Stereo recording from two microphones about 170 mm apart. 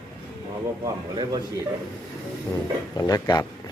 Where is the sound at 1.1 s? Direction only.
25° right (ahead or behind).